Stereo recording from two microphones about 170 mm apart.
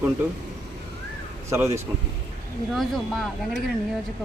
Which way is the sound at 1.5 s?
15° right (ahead or behind).